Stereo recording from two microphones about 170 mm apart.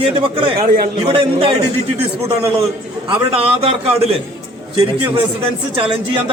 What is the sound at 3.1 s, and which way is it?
Speech, 35° right (ahead or behind).